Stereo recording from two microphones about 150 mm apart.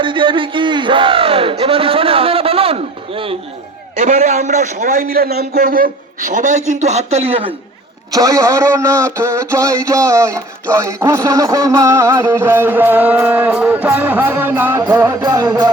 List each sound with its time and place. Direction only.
0.0 s speech: 35° right (ahead or behind)
3.9 s a man's voice: 60° right (ahead or behind)
4.9 s a man's voice: 90° right; by 7.4 s 45° right (ahead or behind)
8.1 s speech: 20° right (ahead or behind)
9.1 s a sound: 20° right (ahead or behind)